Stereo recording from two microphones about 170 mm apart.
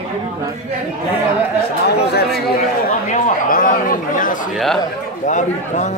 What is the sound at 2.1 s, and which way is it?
Speech, 65° left (ahead or behind).